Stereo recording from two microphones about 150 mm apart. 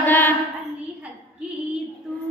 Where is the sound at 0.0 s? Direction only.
10° left (ahead or behind).